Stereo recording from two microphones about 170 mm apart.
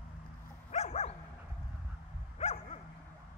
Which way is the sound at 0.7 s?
40° left (ahead or behind).